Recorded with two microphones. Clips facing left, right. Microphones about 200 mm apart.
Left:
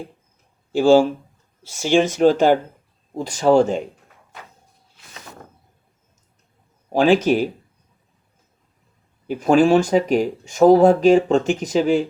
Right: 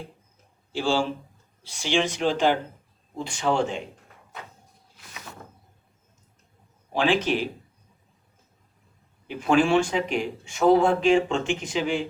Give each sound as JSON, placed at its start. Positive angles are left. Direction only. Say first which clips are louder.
{"t": 0.7, "sound": "speech", "louder": "left 11 dB", "side_deg": 45}
{"t": 6.9, "sound": "speech", "louder": "left 8 dB", "side_deg": 40}
{"t": 9.2, "sound": "speech", "louder": "left 6 dB", "side_deg": 40}